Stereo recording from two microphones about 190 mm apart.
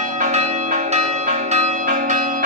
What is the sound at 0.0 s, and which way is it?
Change ringing, 40° right (ahead or behind).